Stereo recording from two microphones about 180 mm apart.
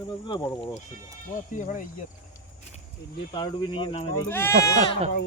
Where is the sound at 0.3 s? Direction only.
25° left (ahead or behind).